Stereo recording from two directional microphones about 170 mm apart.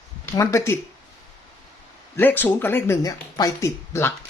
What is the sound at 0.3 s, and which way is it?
Speech, 15° left (ahead or behind).